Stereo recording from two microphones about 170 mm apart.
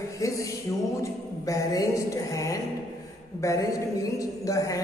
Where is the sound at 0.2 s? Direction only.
20° left (ahead or behind).